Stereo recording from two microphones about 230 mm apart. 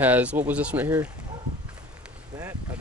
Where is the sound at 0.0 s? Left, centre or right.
Centre.